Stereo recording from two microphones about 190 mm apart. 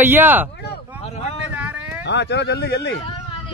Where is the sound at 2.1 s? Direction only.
65° left (ahead or behind).